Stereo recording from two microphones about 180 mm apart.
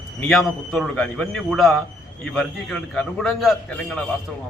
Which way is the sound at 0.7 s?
5° left (ahead or behind).